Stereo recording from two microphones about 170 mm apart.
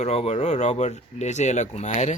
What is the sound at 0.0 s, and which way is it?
Speech, 40° left (ahead or behind).